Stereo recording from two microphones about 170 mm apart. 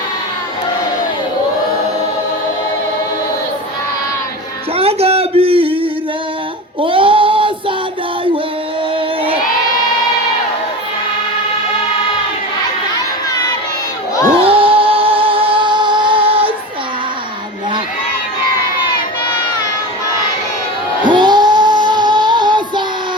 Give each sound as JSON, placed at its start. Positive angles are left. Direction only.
{"t": 4.8, "sound": "a sound", "side_deg": -35}
{"t": 14.4, "sound": "music", "side_deg": -35}
{"t": 21.0, "sound": "child singing", "side_deg": -25}